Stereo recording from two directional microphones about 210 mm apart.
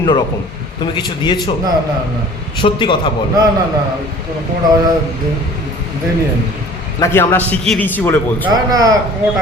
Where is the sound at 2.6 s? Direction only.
25° left (ahead or behind).